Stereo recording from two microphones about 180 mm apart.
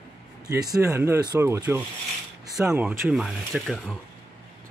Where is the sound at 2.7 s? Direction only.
5° right (ahead or behind).